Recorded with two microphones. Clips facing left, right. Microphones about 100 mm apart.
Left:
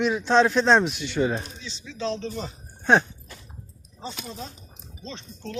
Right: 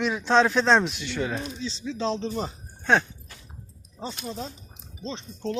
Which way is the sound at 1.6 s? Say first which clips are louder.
Right 3 dB; 30° right (ahead or behind).